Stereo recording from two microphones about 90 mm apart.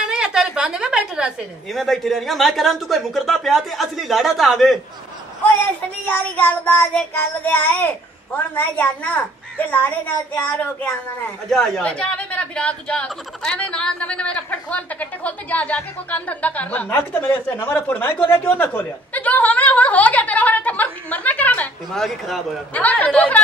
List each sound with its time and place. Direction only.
0.0 s a sound: 10° right (ahead or behind)
1.7 s speech: centre (ahead or behind)
5.5 s child singing: 20° left (ahead or behind)
11.5 s speech: 5° left (ahead or behind)
21.9 s speech: 5° left (ahead or behind)
22.8 s speech: 15° left (ahead or behind)